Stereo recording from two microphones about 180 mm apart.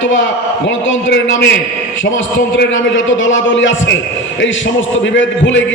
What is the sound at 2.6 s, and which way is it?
A man's voice, 90° left.